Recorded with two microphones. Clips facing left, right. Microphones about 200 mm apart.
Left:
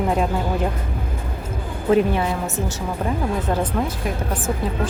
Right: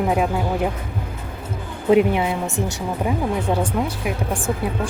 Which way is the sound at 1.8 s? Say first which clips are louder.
Right 2 dB; 15° right (ahead or behind).